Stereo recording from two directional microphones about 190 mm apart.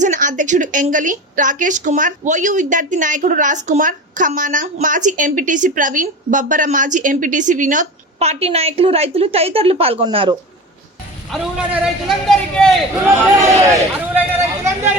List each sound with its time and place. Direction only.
0.0 s a woman's voice: 40° right (ahead or behind)
11.3 s a man's voice: 5° right (ahead or behind)
13.3 s speech: 15° right (ahead or behind)